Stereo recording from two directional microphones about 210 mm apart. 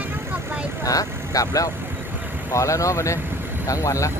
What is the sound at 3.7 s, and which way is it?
Speech, 15° left (ahead or behind).